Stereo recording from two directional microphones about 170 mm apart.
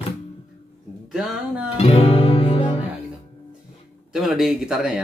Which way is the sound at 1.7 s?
35° left (ahead or behind).